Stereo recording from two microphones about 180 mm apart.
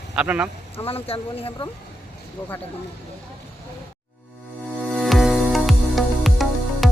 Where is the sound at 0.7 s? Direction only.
30° left (ahead or behind).